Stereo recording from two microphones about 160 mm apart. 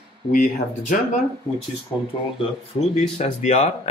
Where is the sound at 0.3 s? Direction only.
55° left (ahead or behind).